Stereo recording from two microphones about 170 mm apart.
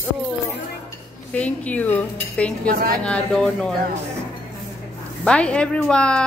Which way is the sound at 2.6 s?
60° right (ahead or behind).